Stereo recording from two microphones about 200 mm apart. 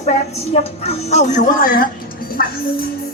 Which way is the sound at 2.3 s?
50° left (ahead or behind).